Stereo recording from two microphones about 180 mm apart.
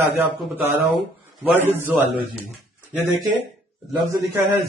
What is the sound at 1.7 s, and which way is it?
Speech, 10° right (ahead or behind).